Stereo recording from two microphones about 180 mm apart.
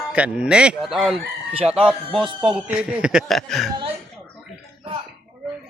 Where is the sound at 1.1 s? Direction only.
30° right (ahead or behind).